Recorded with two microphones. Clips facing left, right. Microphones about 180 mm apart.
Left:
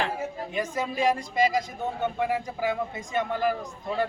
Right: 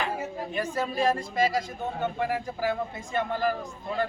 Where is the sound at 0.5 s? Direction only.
15° left (ahead or behind).